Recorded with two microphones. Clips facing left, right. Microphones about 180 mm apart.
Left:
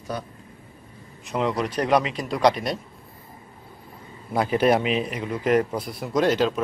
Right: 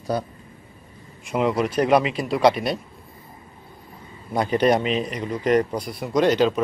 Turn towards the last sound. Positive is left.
turn(degrees=0)  # may be behind; listen again after turning